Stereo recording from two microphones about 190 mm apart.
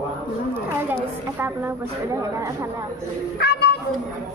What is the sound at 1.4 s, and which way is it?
Speech, 10° right (ahead or behind).